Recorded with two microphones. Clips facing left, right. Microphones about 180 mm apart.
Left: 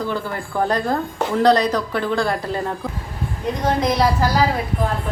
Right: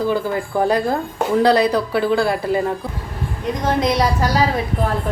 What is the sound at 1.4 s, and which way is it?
Speech, 10° right (ahead or behind).